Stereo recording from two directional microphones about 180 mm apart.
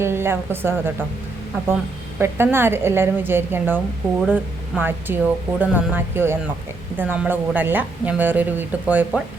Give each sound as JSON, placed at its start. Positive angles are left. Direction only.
{"t": 0.0, "sound": "speech", "side_deg": -15}
{"t": 2.1, "sound": "speech", "side_deg": -15}